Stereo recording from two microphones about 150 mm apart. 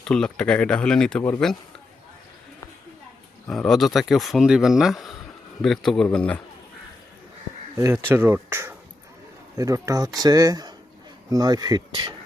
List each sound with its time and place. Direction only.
0.0 s speech: 5° left (ahead or behind)
3.4 s speech: 5° left (ahead or behind)
8.0 s speech: 15° right (ahead or behind)